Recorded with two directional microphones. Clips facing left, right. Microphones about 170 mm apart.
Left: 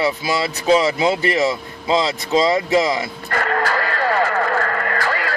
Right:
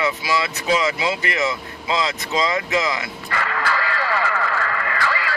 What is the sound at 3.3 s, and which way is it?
Radio, 45° left (ahead or behind).